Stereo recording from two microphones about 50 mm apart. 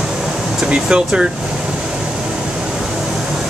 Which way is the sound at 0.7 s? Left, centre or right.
Right.